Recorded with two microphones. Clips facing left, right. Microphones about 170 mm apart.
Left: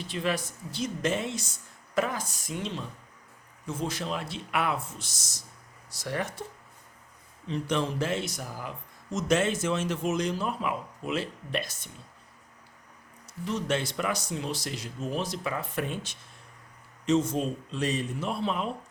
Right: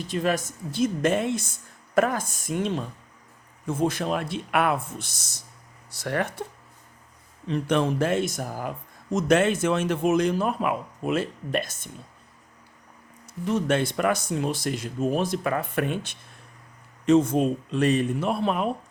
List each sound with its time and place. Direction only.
0.0 s speech: 45° right (ahead or behind); by 6.4 s 60° right (ahead or behind)
7.4 s speech: 60° right (ahead or behind)
13.2 s speech: 55° right (ahead or behind)